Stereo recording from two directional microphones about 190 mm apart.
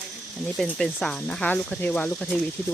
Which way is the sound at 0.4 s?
5° left (ahead or behind).